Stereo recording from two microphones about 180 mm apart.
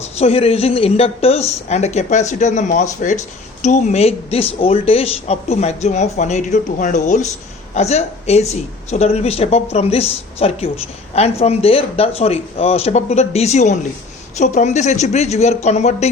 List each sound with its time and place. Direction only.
0.0 s speech: 35° left (ahead or behind)